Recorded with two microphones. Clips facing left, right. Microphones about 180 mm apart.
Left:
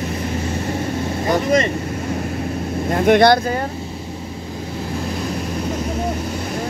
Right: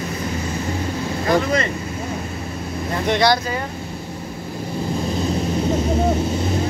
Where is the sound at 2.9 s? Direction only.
55° left (ahead or behind).